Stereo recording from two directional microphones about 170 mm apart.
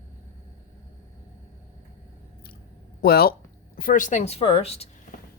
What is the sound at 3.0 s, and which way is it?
Speech, 65° left (ahead or behind).